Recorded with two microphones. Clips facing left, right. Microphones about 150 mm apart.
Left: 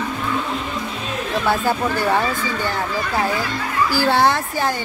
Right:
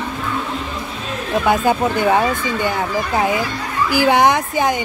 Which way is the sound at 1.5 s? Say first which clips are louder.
Right 4 dB; 20° right (ahead or behind).